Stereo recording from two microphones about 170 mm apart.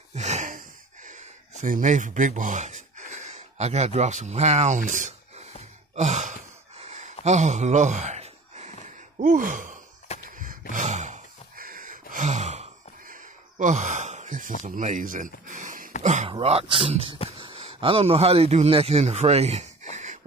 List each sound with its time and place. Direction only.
0.1 s a sound: 40° right (ahead or behind)
10.7 s gasp: 45° right (ahead or behind)
13.1 s sigh: 45° right (ahead or behind)
14.6 s speech: 45° right (ahead or behind)
16.0 s a sound: 45° right (ahead or behind)
16.3 s speech: 35° right (ahead or behind)